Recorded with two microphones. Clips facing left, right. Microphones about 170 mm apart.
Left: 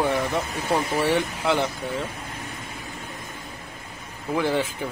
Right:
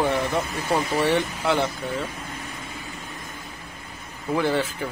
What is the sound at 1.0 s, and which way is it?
Speech, 15° left (ahead or behind).